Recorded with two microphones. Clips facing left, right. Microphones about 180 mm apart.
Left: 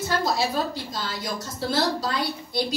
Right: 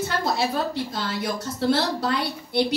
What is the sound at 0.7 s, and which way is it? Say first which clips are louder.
A woman's voice: right 4 dB; 60° right (ahead or behind).